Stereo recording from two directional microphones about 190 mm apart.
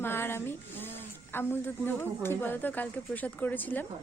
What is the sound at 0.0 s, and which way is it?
Speech, 10° left (ahead or behind).